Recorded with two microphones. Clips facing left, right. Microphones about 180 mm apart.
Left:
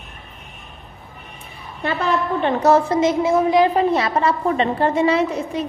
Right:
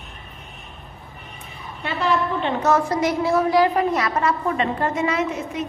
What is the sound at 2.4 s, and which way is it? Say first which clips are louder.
A woman's voice: left 4 dB; 35° left (ahead or behind).